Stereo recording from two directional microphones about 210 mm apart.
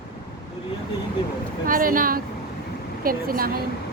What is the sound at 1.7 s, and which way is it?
A woman's voice, 40° right (ahead or behind).